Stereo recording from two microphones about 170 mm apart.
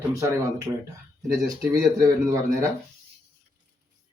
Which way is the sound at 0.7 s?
15° right (ahead or behind).